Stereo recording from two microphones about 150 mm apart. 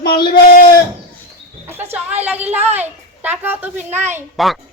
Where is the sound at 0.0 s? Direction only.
80° left.